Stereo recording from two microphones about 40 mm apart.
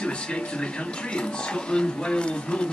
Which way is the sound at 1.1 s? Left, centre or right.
Left.